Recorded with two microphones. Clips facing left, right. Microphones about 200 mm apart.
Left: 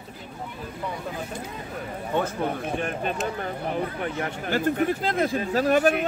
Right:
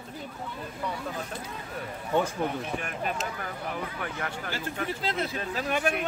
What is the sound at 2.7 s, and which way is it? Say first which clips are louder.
Speech: left 5 dB; 30° left (ahead or behind).